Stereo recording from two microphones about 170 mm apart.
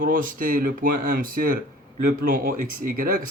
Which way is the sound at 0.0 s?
55° right (ahead or behind).